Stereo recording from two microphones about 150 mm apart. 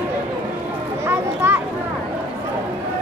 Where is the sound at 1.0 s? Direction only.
15° right (ahead or behind).